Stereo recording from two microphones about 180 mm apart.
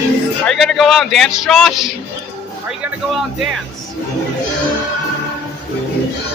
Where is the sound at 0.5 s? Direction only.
Centre (ahead or behind).